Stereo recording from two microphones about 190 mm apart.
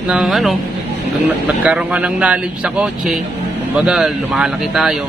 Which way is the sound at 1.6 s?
5° right (ahead or behind).